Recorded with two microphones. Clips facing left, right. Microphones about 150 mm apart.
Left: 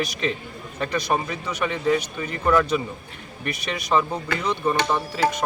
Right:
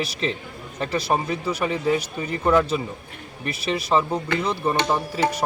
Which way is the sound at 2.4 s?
25° right (ahead or behind).